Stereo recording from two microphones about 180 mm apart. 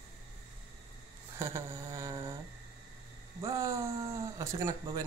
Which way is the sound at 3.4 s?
20° right (ahead or behind).